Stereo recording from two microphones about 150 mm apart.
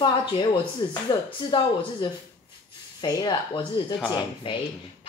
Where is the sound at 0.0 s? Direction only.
35° left (ahead or behind).